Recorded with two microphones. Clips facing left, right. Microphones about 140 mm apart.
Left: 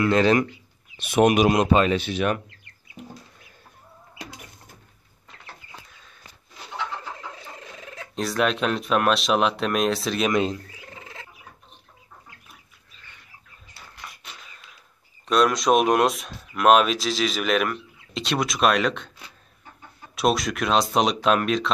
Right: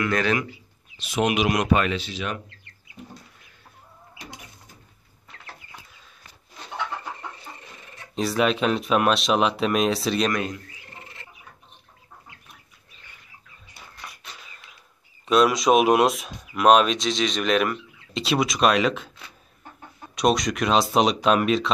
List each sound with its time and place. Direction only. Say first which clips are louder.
0.0 s speech: left 5 dB; 30° left (ahead or behind)
0.9 s speech: left 5 dB; 50° left (ahead or behind)
1.5 s speech: left 3 dB; 25° left (ahead or behind)
2.0 s speech: left 6 dB; 55° left (ahead or behind)
5.9 s chicken: left 1 dB; 5° right (ahead or behind)
7.2 s a sound: even; 90° left
8.1 s speech: right 1 dB; centre (ahead or behind)
10.3 s speech: left 5 dB; 25° left (ahead or behind)
15.2 s speech: right 1 dB; centre (ahead or behind)
20.2 s speech: right 1 dB; centre (ahead or behind)